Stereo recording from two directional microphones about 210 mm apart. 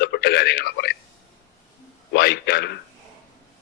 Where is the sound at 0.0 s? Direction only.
50° left (ahead or behind).